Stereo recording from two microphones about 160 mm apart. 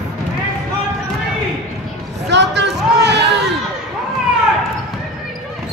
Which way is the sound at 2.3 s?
90° right.